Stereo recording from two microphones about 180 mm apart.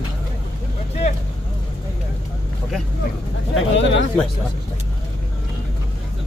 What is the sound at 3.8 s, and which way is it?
Speech, 90° left.